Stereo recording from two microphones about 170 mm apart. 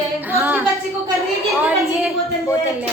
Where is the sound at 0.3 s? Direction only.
10° right (ahead or behind).